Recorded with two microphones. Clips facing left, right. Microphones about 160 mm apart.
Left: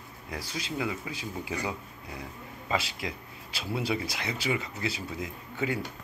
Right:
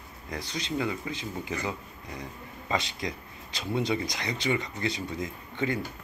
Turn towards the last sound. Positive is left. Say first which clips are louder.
# right 1 dB
turn(degrees=5)  # may be behind; listen again after turning